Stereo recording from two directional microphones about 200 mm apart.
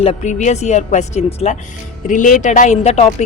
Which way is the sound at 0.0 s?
35° left (ahead or behind).